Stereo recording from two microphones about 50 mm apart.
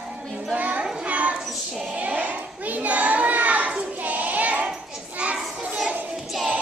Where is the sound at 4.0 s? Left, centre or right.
Right.